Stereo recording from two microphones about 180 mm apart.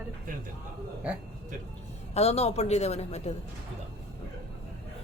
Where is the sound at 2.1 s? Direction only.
35° left (ahead or behind).